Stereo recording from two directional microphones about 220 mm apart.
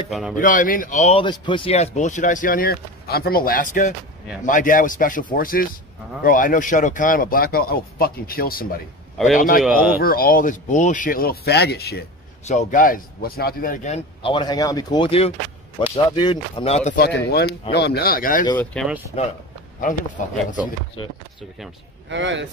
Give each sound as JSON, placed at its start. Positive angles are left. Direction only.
{"t": 0.4, "sound": "speech", "side_deg": 35}
{"t": 9.6, "sound": "speech", "side_deg": -5}
{"t": 9.9, "sound": "speech", "side_deg": 40}
{"t": 12.4, "sound": "speech", "side_deg": 35}
{"t": 16.9, "sound": "speech", "side_deg": 45}
{"t": 18.6, "sound": "speech", "side_deg": 5}
{"t": 19.8, "sound": "speech", "side_deg": 35}
{"t": 22.1, "sound": "speech", "side_deg": -55}